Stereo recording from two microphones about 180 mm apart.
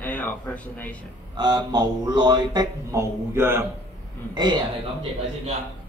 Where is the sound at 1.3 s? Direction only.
25° right (ahead or behind).